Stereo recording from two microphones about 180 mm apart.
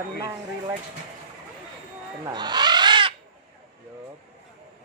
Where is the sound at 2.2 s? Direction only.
25° right (ahead or behind).